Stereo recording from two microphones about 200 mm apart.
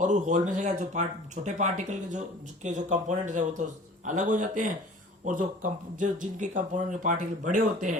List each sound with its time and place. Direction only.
0.0 s speech: 40° right (ahead or behind)